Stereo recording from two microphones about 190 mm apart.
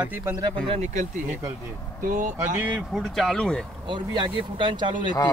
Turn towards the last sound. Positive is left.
turn(degrees=-25)  # may be behind; listen again after turning